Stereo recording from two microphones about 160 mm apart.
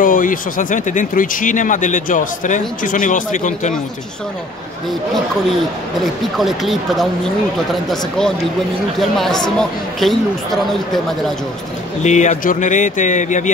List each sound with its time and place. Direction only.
0.0 s speech: 60° left (ahead or behind)
6.3 s a man's voice: centre (ahead or behind)
9.6 s a man's voice: centre (ahead or behind)
12.0 s speech: 45° left (ahead or behind)